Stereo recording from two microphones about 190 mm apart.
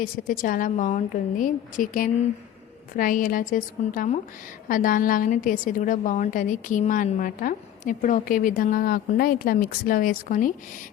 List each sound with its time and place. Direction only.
0.0 s a woman's voice: 45° left (ahead or behind)